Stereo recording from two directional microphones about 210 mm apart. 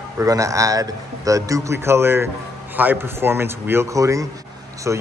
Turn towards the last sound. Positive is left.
turn(degrees=-10)  # may be behind; listen again after turning